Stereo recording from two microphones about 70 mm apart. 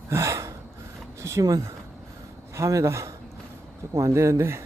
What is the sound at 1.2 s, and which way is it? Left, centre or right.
Speech, right.